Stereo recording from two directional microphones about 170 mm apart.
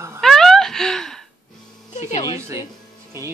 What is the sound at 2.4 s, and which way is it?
Speech, 15° right (ahead or behind).